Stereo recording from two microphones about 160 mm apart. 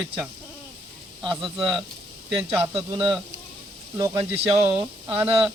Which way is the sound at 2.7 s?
35° right (ahead or behind).